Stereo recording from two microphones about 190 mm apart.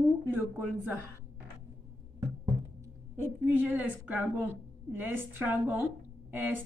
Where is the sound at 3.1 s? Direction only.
10° right (ahead or behind).